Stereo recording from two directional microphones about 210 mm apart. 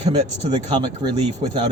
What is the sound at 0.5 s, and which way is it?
Speech, 20° right (ahead or behind).